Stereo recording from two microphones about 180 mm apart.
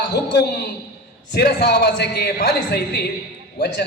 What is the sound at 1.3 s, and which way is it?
A man's voice, 60° left (ahead or behind).